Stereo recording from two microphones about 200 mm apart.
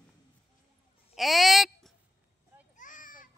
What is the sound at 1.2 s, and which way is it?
Speech, centre (ahead or behind).